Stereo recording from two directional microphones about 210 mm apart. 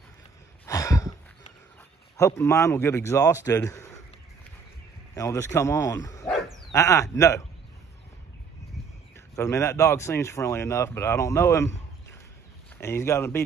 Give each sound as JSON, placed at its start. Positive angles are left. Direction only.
{"t": 0.7, "sound": "a sound", "side_deg": 15}
{"t": 2.1, "sound": "speech", "side_deg": 15}
{"t": 5.1, "sound": "speech", "side_deg": 15}
{"t": 9.1, "sound": "speech", "side_deg": 15}
{"t": 12.8, "sound": "speech", "side_deg": 10}